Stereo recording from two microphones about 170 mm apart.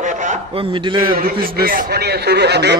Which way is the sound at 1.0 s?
60° right (ahead or behind).